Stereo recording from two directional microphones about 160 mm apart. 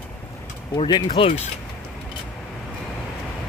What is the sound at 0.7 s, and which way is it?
Speech, 30° left (ahead or behind).